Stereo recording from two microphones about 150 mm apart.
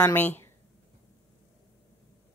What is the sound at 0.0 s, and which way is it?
Speech, 10° left (ahead or behind).